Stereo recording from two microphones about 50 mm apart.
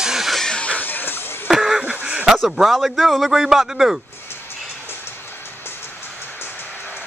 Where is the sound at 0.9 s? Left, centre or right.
Left.